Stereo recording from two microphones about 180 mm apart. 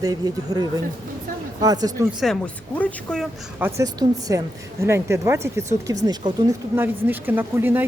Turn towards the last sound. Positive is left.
turn(degrees=-10)  # may be behind; listen again after turning